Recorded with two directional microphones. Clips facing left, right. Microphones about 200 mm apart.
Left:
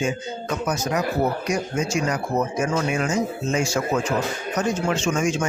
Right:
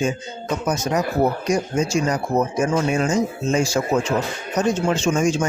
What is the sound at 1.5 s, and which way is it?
Speech, 30° right (ahead or behind).